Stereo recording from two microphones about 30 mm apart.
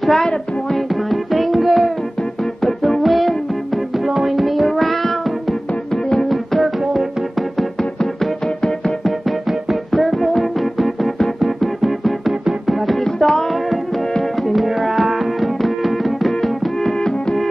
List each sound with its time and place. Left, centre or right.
0.0 s music: centre
9.8 s music: centre
13.0 s music: centre